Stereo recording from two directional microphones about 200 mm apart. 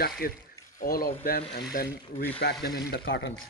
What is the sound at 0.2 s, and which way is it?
Speech, 50° left (ahead or behind).